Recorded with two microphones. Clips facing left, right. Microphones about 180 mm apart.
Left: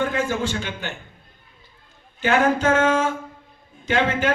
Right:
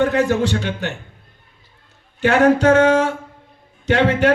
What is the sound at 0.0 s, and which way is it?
Speech, 70° right (ahead or behind).